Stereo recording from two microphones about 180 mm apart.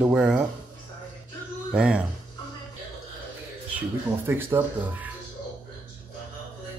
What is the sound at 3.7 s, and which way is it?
Speech, 10° right (ahead or behind).